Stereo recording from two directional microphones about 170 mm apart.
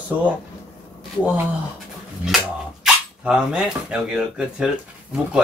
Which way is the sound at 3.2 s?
5° right (ahead or behind).